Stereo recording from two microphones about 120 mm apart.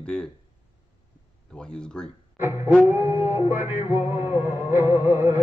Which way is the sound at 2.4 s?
15° right (ahead or behind).